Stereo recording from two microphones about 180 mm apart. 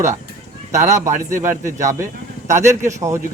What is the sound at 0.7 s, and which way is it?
Speech, 40° right (ahead or behind).